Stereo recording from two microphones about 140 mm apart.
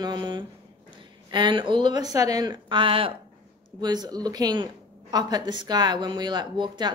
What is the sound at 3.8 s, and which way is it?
Speech, 30° right (ahead or behind).